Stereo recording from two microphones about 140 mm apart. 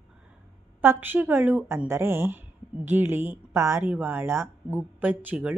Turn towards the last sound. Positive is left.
turn(degrees=-10)  # may be behind; listen again after turning